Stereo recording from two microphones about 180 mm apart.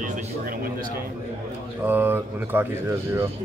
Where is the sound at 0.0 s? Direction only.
50° right (ahead or behind).